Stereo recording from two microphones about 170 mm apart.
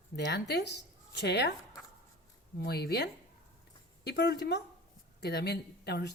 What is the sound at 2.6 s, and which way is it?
Speech, 70° left (ahead or behind).